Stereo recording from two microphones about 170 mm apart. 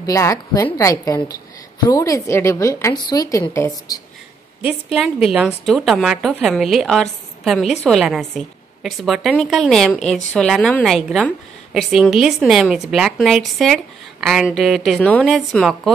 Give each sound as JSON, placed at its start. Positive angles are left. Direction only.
{"t": 0.0, "sound": "a woman's voice", "side_deg": 20}
{"t": 4.9, "sound": "a woman's voice", "side_deg": -5}